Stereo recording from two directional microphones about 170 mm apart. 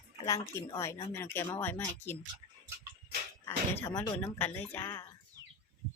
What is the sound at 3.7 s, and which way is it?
Speech, 15° left (ahead or behind).